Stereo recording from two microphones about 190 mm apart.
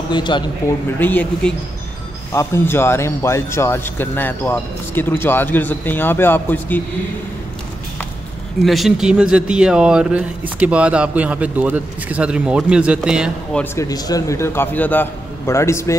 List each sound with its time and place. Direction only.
0.1 s speech: 25° left (ahead or behind)
0.8 s speech: 10° left (ahead or behind)
8.6 s speech: centre (ahead or behind)
13.6 s speech: 15° left (ahead or behind)